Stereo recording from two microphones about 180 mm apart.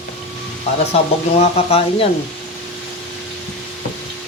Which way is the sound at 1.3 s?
35° left (ahead or behind).